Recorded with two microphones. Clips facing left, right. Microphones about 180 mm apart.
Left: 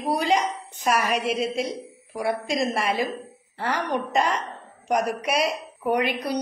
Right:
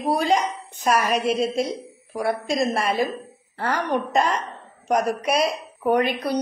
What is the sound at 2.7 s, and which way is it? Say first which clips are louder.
Speech: right 2 dB; 45° right (ahead or behind).